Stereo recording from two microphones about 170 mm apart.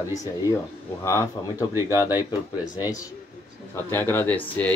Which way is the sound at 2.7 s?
20° left (ahead or behind).